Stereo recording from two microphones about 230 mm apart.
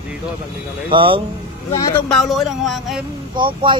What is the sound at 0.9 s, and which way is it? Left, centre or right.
Speech, right.